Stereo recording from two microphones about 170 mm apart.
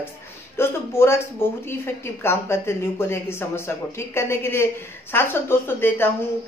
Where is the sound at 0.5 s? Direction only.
15° left (ahead or behind).